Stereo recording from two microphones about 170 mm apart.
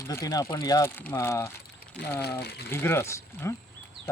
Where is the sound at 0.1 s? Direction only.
20° left (ahead or behind).